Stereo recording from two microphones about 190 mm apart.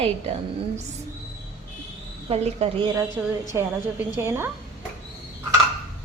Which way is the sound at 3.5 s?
10° right (ahead or behind).